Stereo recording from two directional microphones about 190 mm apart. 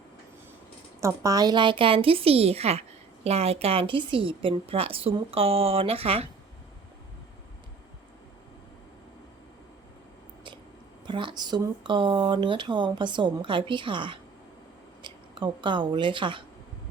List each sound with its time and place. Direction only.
1.0 s a woman's voice: 20° right (ahead or behind)
11.0 s speech: 25° right (ahead or behind)